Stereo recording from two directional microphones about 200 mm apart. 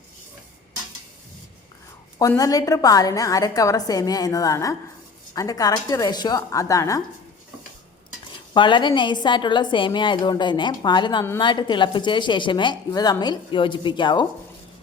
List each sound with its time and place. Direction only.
2.1 s a woman's voice: 15° left (ahead or behind)
8.5 s a woman's voice: 25° left (ahead or behind)